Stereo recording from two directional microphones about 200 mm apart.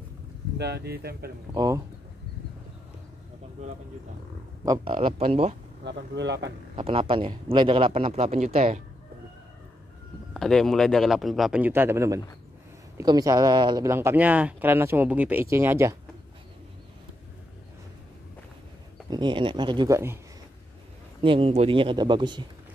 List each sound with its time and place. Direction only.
0.6 s speech: 55° right (ahead or behind)
1.5 s speech: 20° right (ahead or behind)
4.9 s speech: 30° right (ahead or behind)
5.9 s speech: 60° right (ahead or behind)
6.8 s speech: 25° right (ahead or behind)
10.3 s speech: 5° left (ahead or behind)
19.0 s speech: 20° right (ahead or behind)
21.2 s speech: 25° right (ahead or behind)